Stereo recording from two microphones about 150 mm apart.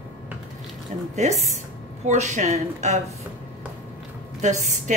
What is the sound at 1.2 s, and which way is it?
A woman's voice, 50° right (ahead or behind).